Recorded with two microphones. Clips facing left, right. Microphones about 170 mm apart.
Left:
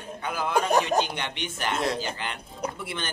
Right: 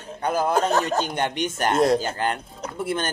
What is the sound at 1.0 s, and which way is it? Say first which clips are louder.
Speech: right 4 dB; 45° right (ahead or behind).